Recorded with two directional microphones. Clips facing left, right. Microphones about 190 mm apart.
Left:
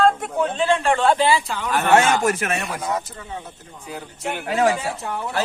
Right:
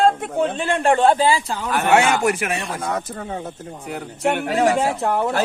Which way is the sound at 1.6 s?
15° right (ahead or behind).